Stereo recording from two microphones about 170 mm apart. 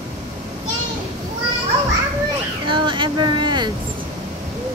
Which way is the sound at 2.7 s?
30° right (ahead or behind).